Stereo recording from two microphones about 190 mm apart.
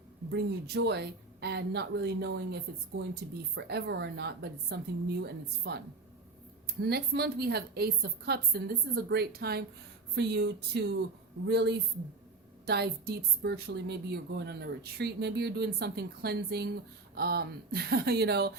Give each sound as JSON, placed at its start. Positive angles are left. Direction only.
{"t": 0.3, "sound": "a woman's voice", "side_deg": -60}
{"t": 6.8, "sound": "a woman's voice", "side_deg": -55}